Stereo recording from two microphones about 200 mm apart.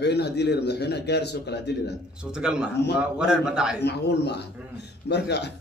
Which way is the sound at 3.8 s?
55° left (ahead or behind).